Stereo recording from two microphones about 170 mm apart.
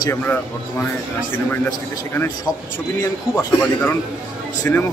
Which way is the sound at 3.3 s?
10° left (ahead or behind).